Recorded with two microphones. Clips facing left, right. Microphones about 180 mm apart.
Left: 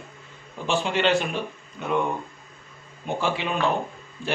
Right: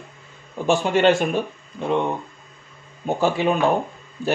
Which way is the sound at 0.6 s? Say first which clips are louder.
Right 6 dB; 45° right (ahead or behind).